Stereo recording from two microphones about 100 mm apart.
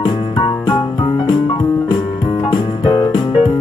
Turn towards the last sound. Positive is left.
turn(degrees=55)  # may be behind; listen again after turning